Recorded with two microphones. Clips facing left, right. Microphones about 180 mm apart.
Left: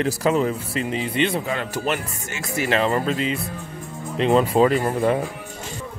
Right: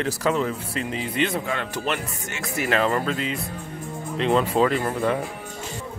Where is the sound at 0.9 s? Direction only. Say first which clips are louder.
Left 2 dB; centre (ahead or behind).